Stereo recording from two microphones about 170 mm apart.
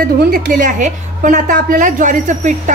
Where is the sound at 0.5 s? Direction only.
50° right (ahead or behind).